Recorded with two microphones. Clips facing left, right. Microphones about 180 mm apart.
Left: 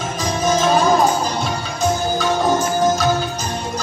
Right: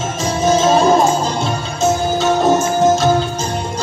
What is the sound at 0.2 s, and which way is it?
Music, 25° right (ahead or behind).